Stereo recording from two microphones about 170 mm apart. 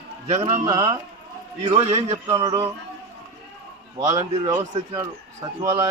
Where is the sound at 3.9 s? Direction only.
20° right (ahead or behind).